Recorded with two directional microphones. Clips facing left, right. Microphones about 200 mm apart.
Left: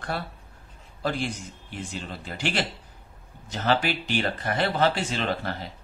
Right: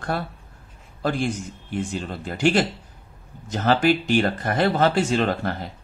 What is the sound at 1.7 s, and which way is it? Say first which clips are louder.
A man's voice: right 8 dB; 50° right (ahead or behind).